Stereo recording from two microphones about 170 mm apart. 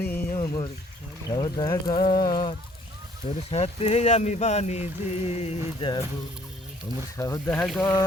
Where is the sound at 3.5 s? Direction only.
40° left (ahead or behind).